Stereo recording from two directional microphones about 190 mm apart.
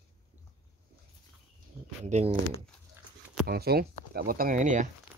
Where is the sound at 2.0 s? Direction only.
35° right (ahead or behind).